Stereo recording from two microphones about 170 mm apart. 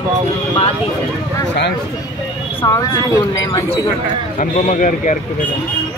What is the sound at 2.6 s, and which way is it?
Speech, 20° left (ahead or behind).